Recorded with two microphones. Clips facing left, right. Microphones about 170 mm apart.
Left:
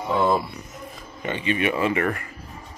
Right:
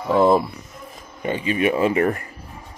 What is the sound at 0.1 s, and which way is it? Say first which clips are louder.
Speech: right 6 dB; 30° right (ahead or behind).